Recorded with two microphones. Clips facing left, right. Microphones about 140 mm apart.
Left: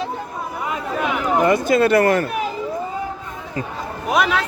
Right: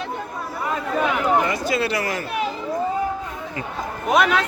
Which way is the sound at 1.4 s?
50° left (ahead or behind).